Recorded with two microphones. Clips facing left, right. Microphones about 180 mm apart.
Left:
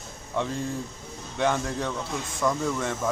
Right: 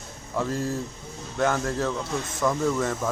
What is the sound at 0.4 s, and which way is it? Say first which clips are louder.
Speech: right 2 dB; 5° right (ahead or behind).